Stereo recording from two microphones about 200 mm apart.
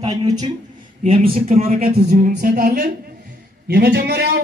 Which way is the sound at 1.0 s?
30° right (ahead or behind).